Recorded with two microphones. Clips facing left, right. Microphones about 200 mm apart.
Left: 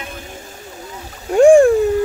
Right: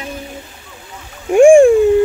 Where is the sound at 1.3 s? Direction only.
10° right (ahead or behind).